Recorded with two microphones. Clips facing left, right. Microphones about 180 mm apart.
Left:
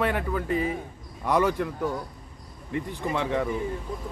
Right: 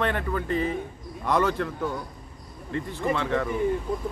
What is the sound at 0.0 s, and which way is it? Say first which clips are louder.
A man's voice: even; 10° left (ahead or behind).